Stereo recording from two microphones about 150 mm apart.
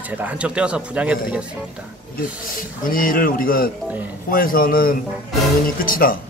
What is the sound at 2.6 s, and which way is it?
Speech, 70° left (ahead or behind).